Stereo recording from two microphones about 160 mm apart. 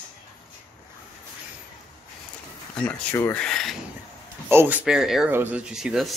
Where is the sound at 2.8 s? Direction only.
10° left (ahead or behind).